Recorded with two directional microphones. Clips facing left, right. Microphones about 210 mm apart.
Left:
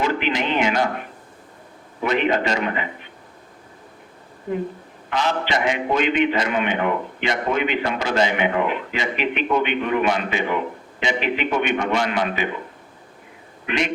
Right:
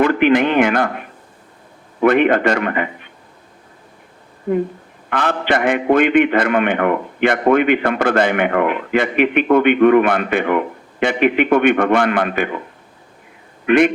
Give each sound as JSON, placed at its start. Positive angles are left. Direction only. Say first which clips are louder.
{"t": 0.0, "sound": "a man's voice", "louder": "right 9 dB", "side_deg": -55}
{"t": 2.0, "sound": "a man's voice", "louder": "right 7 dB", "side_deg": -55}
{"t": 4.5, "sound": "a man's voice", "louder": "right 7 dB", "side_deg": -60}
{"t": 13.7, "sound": "a man's voice", "louder": "right 12 dB", "side_deg": -55}